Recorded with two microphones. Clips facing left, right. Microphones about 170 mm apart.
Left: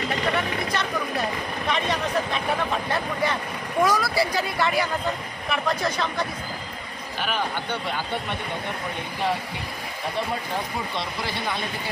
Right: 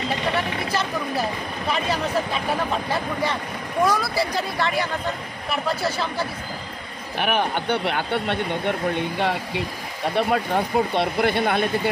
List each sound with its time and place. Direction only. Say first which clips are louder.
0.7 s speech: right 2 dB; 5° right (ahead or behind)
7.2 s speech: right 5 dB; 60° right (ahead or behind)
10.1 s speech: right 8 dB; 65° right (ahead or behind)